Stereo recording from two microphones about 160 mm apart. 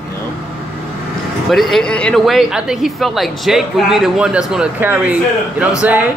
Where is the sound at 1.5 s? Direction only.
Centre (ahead or behind).